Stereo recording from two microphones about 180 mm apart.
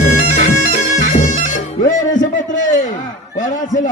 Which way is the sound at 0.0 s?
40° left (ahead or behind).